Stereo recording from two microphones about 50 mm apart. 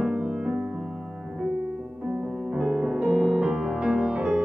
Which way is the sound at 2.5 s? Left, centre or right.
Centre.